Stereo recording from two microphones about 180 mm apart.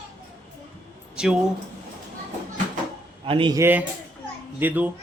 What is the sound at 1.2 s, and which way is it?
Speech, 5° right (ahead or behind).